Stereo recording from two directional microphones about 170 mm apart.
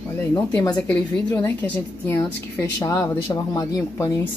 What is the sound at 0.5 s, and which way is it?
A woman's voice, 10° left (ahead or behind).